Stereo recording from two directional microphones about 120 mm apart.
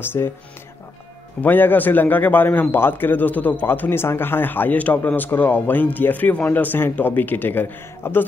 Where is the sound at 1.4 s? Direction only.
15° left (ahead or behind).